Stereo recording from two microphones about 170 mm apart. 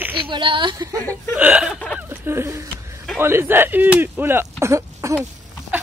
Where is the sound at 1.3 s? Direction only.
5° right (ahead or behind).